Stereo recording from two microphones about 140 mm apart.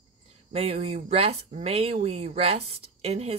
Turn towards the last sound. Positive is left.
turn(degrees=-50)  # may be behind; listen again after turning